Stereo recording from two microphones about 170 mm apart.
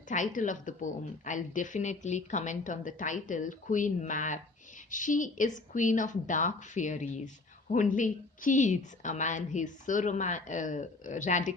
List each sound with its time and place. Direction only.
0.1 s a woman's voice: 50° left (ahead or behind)